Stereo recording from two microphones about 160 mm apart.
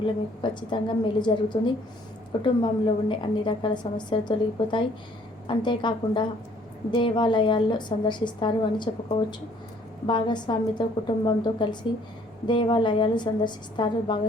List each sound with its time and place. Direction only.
0.0 s a woman's voice: 30° left (ahead or behind)
10.1 s a woman's voice: 30° left (ahead or behind)